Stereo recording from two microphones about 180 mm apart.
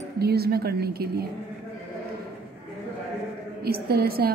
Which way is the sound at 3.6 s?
60° right (ahead or behind).